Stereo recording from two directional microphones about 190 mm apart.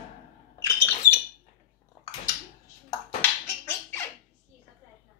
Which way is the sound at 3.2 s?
10° left (ahead or behind).